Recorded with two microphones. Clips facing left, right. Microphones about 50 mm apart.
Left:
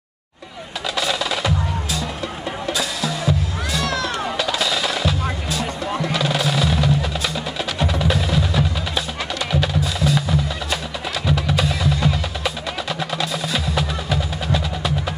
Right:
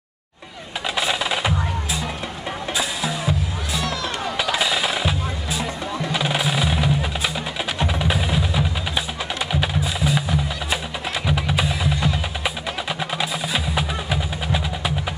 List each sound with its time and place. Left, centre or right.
0.9 s percussion: centre
2.6 s music: centre
3.8 s music: left
4.4 s fireworks: centre
6.1 s music: centre